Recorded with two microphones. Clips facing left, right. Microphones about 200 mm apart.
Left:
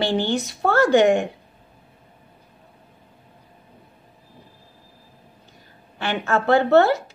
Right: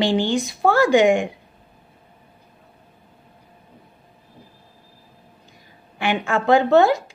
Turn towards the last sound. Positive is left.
turn(degrees=-15)  # may be behind; listen again after turning